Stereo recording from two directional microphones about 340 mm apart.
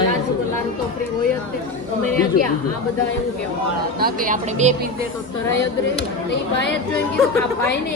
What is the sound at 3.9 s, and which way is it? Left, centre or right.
Speech, right.